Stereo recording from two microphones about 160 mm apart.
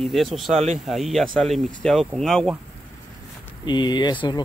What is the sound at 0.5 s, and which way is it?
Speech, 45° right (ahead or behind).